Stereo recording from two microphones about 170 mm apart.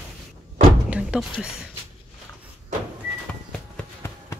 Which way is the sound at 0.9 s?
5° right (ahead or behind).